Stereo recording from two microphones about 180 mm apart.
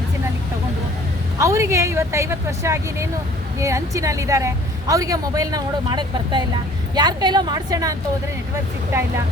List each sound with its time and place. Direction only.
1.4 s a woman's voice: 15° right (ahead or behind)